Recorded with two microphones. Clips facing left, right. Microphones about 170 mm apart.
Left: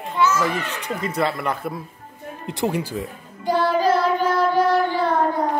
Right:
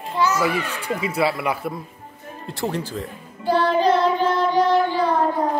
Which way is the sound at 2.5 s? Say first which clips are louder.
Left 2 dB; 15° left (ahead or behind).